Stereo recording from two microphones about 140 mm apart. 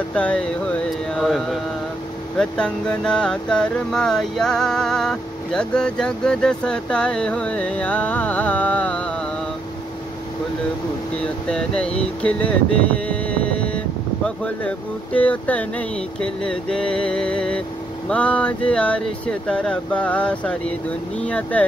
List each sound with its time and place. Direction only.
0.1 s speech: 10° left (ahead or behind)
11.4 s speech: 5° left (ahead or behind)